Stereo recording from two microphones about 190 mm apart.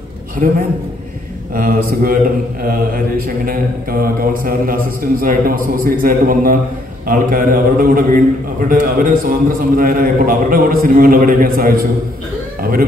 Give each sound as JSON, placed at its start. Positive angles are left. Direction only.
{"t": 1.5, "sound": "a man's voice", "side_deg": -50}